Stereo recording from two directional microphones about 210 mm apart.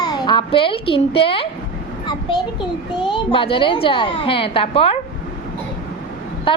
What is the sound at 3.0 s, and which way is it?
A child's voice, 25° left (ahead or behind).